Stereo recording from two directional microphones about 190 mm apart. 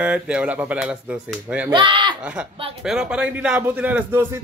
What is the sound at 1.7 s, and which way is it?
Speech, 25° right (ahead or behind).